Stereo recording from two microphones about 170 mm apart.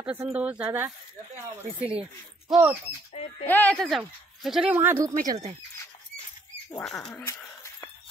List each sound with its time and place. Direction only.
0.0 s speech: 10° right (ahead or behind)
3.4 s speech: 10° left (ahead or behind)
3.8 s speech: centre (ahead or behind)
6.8 s speech: 5° left (ahead or behind)
7.2 s a sound: 15° left (ahead or behind)